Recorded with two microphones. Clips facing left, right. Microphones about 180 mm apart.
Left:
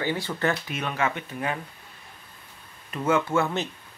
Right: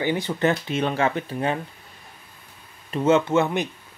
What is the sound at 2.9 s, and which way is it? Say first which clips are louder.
Speech: right 5 dB; 25° right (ahead or behind).